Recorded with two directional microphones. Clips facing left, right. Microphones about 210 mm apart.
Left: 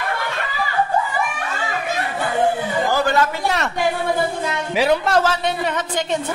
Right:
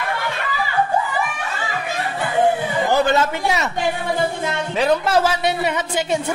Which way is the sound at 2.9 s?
20° right (ahead or behind).